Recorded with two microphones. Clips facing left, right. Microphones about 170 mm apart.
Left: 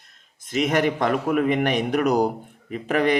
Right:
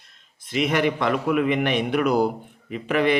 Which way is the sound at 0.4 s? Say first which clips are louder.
Left 1 dB; 45° left (ahead or behind).